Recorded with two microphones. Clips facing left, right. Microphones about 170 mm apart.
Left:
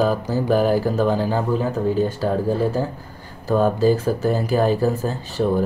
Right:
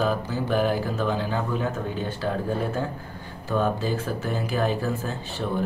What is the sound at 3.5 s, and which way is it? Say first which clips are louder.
Speech: left 8 dB; 40° left (ahead or behind).